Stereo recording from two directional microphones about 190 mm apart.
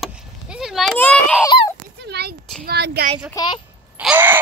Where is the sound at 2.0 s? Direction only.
60° right (ahead or behind).